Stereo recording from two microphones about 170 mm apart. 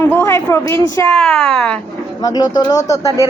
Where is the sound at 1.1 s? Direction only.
5° left (ahead or behind).